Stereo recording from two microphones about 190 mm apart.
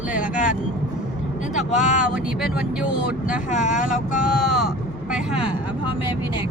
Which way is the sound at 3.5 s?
40° left (ahead or behind).